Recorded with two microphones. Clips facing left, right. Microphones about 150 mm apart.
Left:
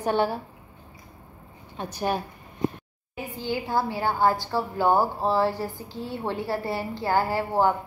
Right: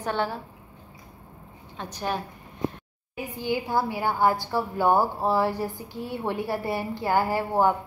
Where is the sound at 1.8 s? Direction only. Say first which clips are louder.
Left 3 dB; 10° left (ahead or behind).